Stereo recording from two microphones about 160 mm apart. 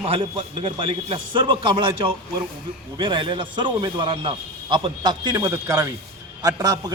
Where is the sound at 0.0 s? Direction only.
35° right (ahead or behind).